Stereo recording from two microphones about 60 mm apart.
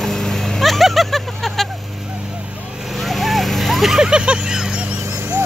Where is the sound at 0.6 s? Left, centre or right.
Centre.